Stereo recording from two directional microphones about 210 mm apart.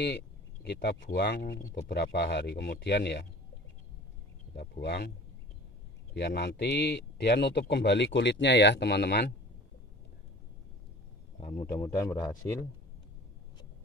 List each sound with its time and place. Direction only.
0.7 s speech: 50° left (ahead or behind)
4.6 s speech: 50° left (ahead or behind)
6.1 s speech: 50° left (ahead or behind)
11.5 s a man's voice: 10° left (ahead or behind)